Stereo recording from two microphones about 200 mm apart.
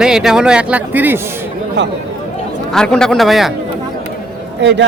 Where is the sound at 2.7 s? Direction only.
5° left (ahead or behind).